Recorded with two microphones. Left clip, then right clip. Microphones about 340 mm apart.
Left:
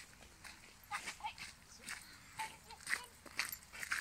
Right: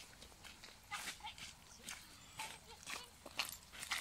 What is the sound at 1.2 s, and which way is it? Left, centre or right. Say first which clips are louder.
Dog: left 5 dB; centre.